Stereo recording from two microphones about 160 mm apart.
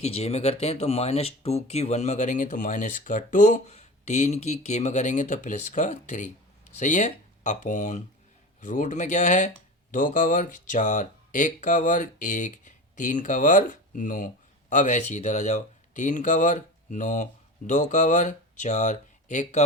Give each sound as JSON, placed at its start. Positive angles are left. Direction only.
{"t": 0.0, "sound": "speech", "side_deg": 40}